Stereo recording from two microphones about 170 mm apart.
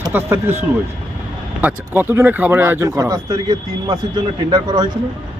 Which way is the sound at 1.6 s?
15° right (ahead or behind).